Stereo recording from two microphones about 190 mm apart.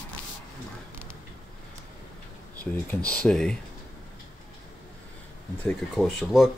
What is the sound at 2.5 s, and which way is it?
Speech, 10° left (ahead or behind).